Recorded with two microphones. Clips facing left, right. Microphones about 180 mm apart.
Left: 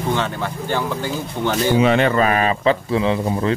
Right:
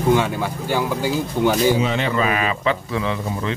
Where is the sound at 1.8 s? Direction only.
60° left (ahead or behind); by 3.5 s 35° left (ahead or behind).